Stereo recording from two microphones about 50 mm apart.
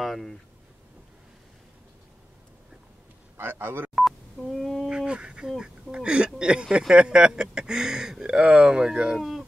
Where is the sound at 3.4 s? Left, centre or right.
Right.